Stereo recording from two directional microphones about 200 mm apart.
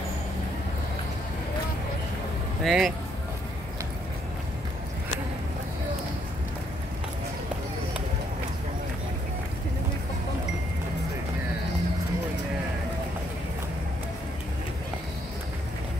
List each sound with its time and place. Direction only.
2.6 s speech: centre (ahead or behind)